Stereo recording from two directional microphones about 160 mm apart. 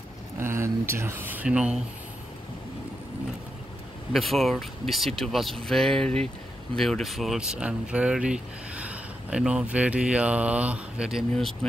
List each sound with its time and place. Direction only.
0.4 s speech: 15° right (ahead or behind)
4.1 s speech: centre (ahead or behind)